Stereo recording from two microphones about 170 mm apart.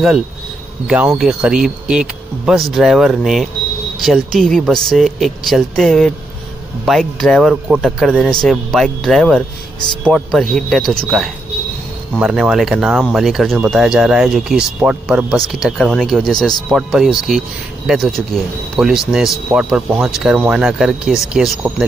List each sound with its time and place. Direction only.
0.8 s speech: 5° right (ahead or behind)
12.1 s speech: 5° right (ahead or behind)